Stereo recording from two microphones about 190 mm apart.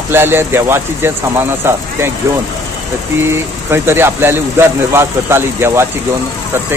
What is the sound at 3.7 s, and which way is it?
Speech, 10° right (ahead or behind).